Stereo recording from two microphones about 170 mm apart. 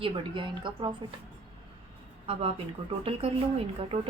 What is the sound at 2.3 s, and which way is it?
Speech, 35° right (ahead or behind).